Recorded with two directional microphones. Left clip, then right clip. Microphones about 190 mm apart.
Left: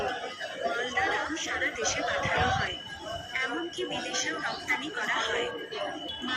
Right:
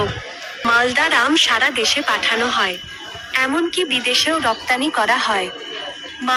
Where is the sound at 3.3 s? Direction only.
55° right (ahead or behind).